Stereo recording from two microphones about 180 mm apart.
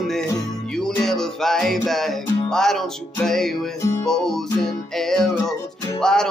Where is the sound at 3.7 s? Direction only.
15° left (ahead or behind).